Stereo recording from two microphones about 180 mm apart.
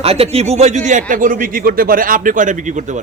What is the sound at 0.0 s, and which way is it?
Speech, 35° right (ahead or behind).